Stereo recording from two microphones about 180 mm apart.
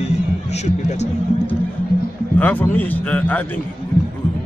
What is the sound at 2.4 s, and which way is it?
Speech, 10° left (ahead or behind).